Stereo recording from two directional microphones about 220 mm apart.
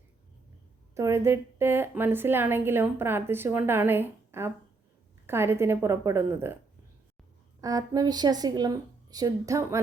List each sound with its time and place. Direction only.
0.9 s a woman's voice: 15° right (ahead or behind)
7.6 s a woman's voice: 15° right (ahead or behind)